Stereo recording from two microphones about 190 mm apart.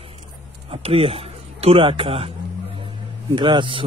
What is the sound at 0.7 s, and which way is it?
A man's voice, 30° right (ahead or behind).